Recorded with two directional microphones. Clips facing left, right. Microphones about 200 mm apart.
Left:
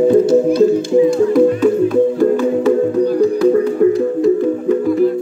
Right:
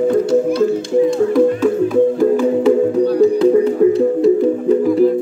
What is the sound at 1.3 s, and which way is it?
Music, centre (ahead or behind).